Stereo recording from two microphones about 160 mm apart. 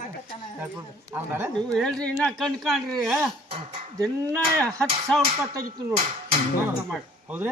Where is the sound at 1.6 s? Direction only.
5° left (ahead or behind).